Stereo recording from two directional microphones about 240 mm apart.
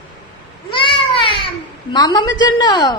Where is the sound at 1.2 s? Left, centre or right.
Left.